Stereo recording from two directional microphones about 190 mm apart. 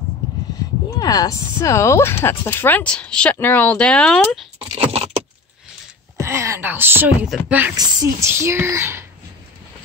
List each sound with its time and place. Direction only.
0.8 s speech: 20° left (ahead or behind)
4.6 s a sound: 30° right (ahead or behind)
6.1 s speech: 15° right (ahead or behind)
7.7 s speech: 20° right (ahead or behind)